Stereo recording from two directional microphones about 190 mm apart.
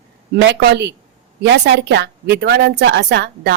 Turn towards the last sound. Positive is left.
turn(degrees=-65)  # may be behind; listen again after turning